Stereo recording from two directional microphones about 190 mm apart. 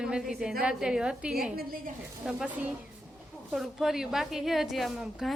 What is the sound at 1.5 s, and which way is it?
Speech, 50° right (ahead or behind).